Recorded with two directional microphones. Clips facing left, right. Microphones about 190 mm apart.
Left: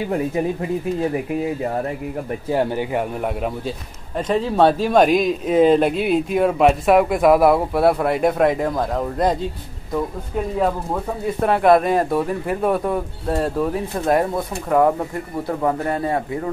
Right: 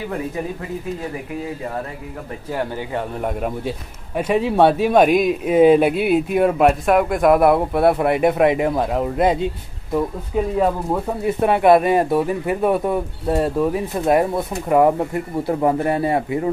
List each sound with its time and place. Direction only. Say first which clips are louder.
2.5 s speech: left 4 dB; 20° left (ahead or behind)
4.5 s speech: right 1 dB; 10° right (ahead or behind)